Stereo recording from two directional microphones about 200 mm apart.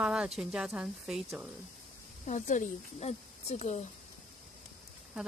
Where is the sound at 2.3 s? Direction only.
40° left (ahead or behind).